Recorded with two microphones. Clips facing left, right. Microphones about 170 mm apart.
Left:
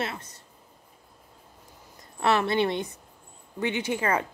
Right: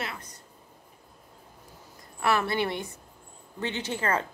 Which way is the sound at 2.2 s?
20° left (ahead or behind).